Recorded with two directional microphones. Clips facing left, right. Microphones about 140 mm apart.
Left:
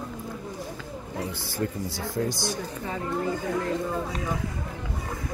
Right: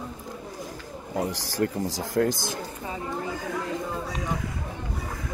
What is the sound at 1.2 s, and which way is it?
Speech, 90° right.